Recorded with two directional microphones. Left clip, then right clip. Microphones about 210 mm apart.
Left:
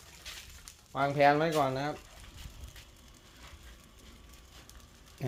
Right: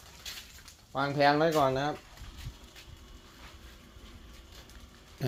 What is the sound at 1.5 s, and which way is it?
Speech, 5° left (ahead or behind).